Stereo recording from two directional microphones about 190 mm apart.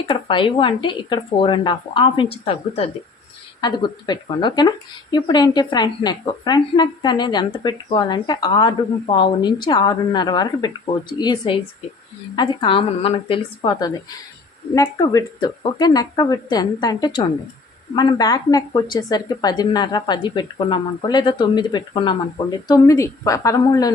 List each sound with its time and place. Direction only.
0.1 s a woman's voice: 25° left (ahead or behind)